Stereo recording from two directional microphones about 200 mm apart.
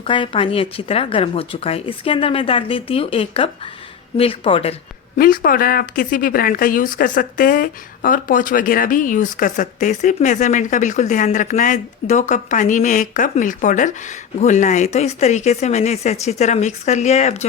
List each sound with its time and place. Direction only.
0.0 s speech: 25° left (ahead or behind)
5.1 s speech: 45° left (ahead or behind)